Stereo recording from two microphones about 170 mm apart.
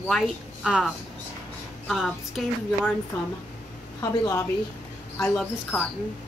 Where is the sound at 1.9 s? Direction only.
Centre (ahead or behind).